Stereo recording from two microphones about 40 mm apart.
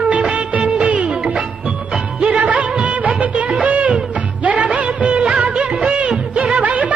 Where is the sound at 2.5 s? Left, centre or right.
Right.